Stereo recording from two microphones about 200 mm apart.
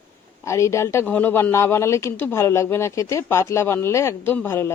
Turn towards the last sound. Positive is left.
turn(degrees=10)  # may be behind; listen again after turning